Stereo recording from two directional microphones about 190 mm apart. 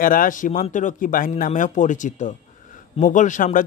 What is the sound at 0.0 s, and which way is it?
Speech, 45° left (ahead or behind).